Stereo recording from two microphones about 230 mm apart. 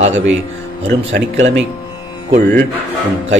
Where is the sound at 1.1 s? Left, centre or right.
Right.